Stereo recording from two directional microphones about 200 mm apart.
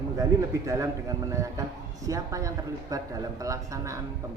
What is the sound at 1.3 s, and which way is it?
Speech, 15° right (ahead or behind).